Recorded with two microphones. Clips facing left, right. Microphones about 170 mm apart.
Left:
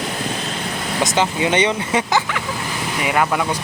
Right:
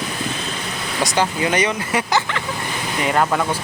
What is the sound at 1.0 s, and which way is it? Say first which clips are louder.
Speech: left 1 dB; 20° left (ahead or behind).